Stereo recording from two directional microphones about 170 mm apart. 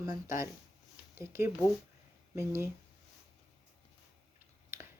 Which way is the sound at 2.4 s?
15° right (ahead or behind).